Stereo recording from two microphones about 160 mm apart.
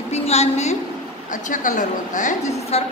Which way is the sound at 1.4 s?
55° left (ahead or behind).